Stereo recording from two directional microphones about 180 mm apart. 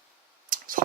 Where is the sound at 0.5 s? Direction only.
50° right (ahead or behind).